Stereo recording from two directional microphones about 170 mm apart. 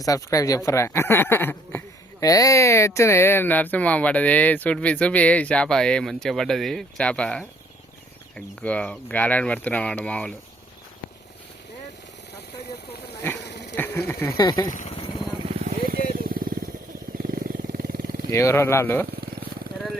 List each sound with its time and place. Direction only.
0.0 s speech: 20° left (ahead or behind)
13.4 s a sound: 80° left
13.7 s a sound: 10° left (ahead or behind)
14.1 s speech: 15° left (ahead or behind)
14.7 s speech: 45° left (ahead or behind)
15.4 s vehicle: 40° right (ahead or behind)
15.9 s vehicle: 60° right (ahead or behind)
17.2 s wild animals: 55° right (ahead or behind)
18.3 s speech: 15° left (ahead or behind)